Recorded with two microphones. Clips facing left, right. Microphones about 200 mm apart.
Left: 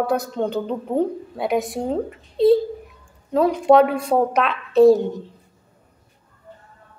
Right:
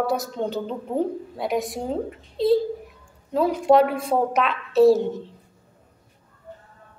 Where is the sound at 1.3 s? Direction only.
Centre (ahead or behind).